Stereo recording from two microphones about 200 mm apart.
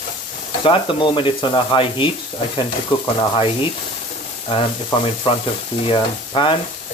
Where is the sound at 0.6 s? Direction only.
25° left (ahead or behind).